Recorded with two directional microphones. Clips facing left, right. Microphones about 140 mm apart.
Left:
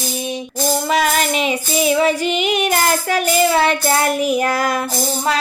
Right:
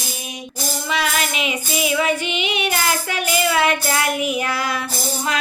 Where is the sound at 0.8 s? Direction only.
45° left (ahead or behind).